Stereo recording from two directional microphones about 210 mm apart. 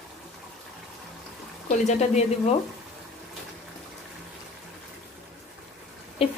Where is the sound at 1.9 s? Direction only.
30° left (ahead or behind).